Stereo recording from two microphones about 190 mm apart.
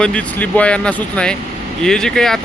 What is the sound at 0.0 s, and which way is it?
Speech, 5° left (ahead or behind).